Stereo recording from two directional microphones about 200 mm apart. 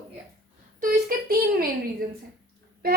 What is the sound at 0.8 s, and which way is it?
Speech, 50° right (ahead or behind).